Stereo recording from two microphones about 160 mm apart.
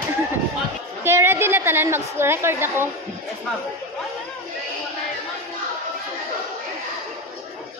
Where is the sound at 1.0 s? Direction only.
15° right (ahead or behind).